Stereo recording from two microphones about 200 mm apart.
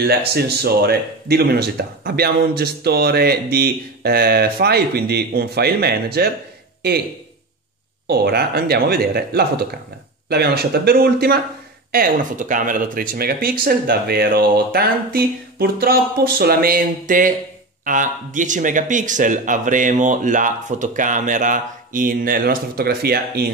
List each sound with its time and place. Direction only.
0.3 s speech: 55° right (ahead or behind)
8.1 s speech: 50° right (ahead or behind)